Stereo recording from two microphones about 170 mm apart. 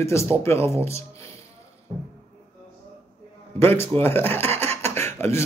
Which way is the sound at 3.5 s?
15° left (ahead or behind).